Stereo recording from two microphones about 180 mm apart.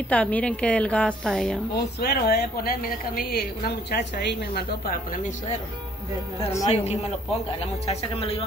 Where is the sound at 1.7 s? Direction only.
65° left (ahead or behind); by 5.5 s 45° left (ahead or behind).